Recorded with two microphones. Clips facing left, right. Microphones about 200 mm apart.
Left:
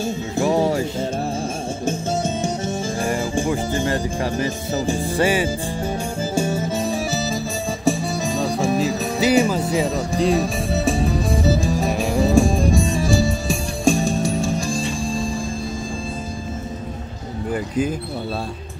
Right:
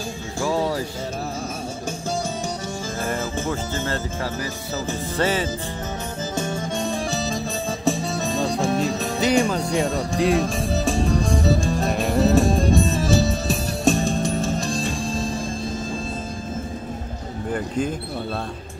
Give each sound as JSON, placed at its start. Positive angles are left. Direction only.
{"t": 0.4, "sound": "music", "side_deg": 20}
{"t": 1.9, "sound": "music", "side_deg": 25}
{"t": 3.0, "sound": "speech", "side_deg": 15}
{"t": 6.3, "sound": "music", "side_deg": 10}